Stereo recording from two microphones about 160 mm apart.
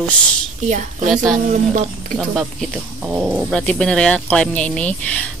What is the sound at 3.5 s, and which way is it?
Speech, 5° left (ahead or behind).